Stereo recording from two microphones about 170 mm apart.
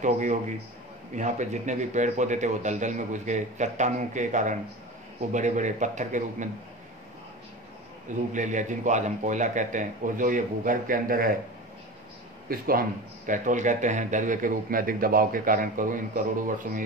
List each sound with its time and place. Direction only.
0.0 s a man's voice: 45° right (ahead or behind)
8.3 s a man's voice: 45° right (ahead or behind)
12.4 s speech: 60° right (ahead or behind)
13.3 s a man's voice: 50° right (ahead or behind)